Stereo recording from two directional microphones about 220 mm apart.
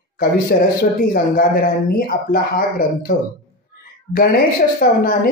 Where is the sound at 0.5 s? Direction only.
35° left (ahead or behind).